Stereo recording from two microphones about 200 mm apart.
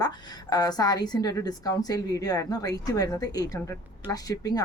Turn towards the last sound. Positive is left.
turn(degrees=20)  # may be behind; listen again after turning